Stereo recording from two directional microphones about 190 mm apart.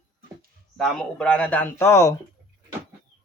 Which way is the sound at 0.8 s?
5° left (ahead or behind).